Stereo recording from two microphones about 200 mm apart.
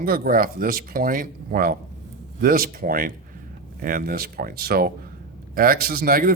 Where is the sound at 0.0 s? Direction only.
45° right (ahead or behind).